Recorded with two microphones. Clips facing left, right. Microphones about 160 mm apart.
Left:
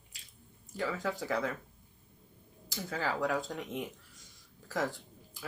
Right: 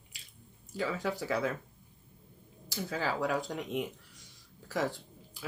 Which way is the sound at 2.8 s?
20° right (ahead or behind).